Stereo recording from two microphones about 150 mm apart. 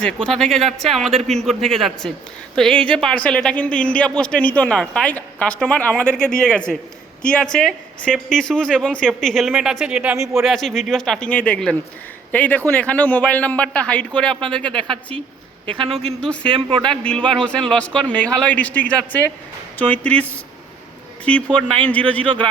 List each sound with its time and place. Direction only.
0.0 s a woman's voice: 5° left (ahead or behind)
15.8 s speech: 40° right (ahead or behind)
16.0 s a woman's voice: 5° left (ahead or behind)
16.5 s speech: 35° right (ahead or behind)
16.9 s speech: 5° left (ahead or behind)
21.5 s speech: 10° left (ahead or behind)